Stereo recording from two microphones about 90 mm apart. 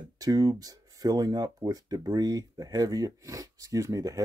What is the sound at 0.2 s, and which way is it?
Speech, 45° right (ahead or behind).